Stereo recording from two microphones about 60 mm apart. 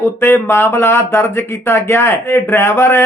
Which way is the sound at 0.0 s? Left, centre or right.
Left.